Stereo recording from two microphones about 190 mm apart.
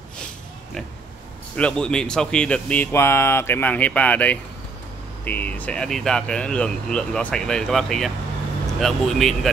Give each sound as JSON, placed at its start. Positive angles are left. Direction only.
{"t": 1.6, "sound": "speech", "side_deg": 5}